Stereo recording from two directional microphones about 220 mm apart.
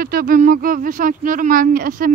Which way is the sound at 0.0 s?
45° right (ahead or behind).